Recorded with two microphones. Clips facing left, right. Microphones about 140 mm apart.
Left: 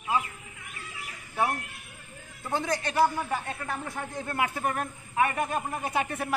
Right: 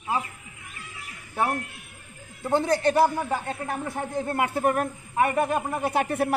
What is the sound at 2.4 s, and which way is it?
A man's voice, 30° right (ahead or behind).